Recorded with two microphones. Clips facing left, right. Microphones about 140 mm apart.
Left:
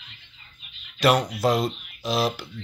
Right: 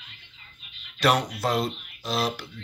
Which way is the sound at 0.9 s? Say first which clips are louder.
Left 2 dB; centre (ahead or behind).